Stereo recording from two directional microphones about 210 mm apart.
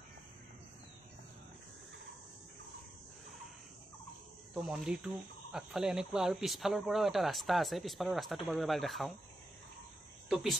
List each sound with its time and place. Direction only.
4.6 s speech: 5° right (ahead or behind)
10.3 s speech: centre (ahead or behind)